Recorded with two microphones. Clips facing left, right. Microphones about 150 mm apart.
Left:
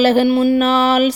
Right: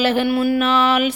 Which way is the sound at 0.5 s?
40° left (ahead or behind).